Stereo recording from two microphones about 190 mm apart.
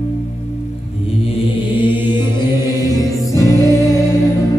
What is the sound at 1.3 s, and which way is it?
Mantra, 25° left (ahead or behind).